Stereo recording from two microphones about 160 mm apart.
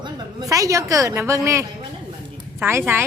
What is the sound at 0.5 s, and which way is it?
A woman's voice, 20° right (ahead or behind).